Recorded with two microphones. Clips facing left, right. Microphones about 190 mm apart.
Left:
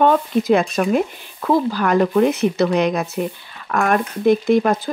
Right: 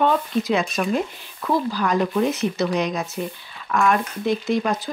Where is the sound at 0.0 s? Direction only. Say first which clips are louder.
Left 4 dB; 50° left (ahead or behind).